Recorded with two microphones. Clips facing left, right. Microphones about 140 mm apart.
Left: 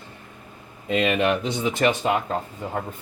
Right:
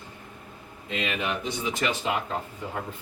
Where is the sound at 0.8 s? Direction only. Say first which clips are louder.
Left 9 dB; 75° left (ahead or behind).